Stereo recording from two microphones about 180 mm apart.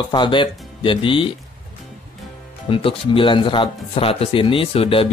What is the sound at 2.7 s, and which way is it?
Speech, 30° left (ahead or behind).